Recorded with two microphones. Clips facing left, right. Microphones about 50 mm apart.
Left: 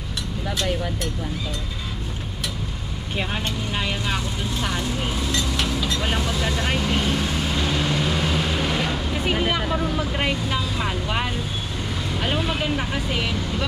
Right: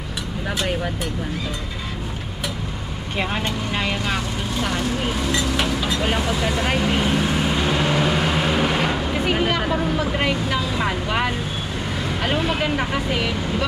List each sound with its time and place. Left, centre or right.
3.2 s vehicle: centre
5.3 s vehicle: centre
11.1 s vehicle: centre
13.1 s speech: centre